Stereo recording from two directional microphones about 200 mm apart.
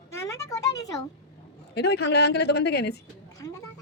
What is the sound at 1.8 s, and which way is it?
A woman's voice, 55° left (ahead or behind).